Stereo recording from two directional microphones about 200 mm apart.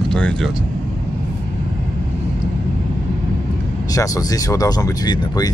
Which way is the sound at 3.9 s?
15° left (ahead or behind).